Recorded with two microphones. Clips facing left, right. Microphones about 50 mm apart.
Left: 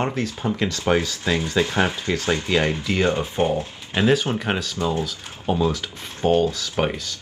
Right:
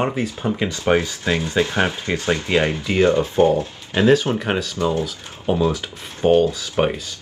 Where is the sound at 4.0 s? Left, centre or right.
Centre.